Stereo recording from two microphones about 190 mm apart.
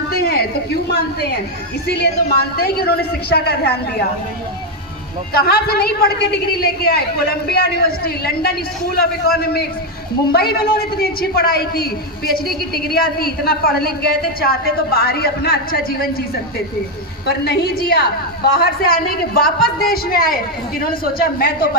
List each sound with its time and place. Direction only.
0.1 s a woman's voice: 55° left (ahead or behind)
5.3 s a man's voice: 55° left (ahead or behind)
12.9 s a woman's voice: 55° left (ahead or behind)
17.2 s a woman's voice: 55° left (ahead or behind)